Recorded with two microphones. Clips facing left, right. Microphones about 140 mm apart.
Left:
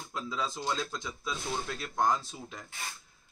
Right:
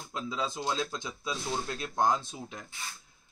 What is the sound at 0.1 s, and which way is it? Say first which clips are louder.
A man's voice: right 1 dB; 15° right (ahead or behind).